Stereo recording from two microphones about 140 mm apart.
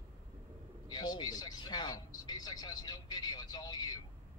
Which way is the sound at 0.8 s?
30° left (ahead or behind).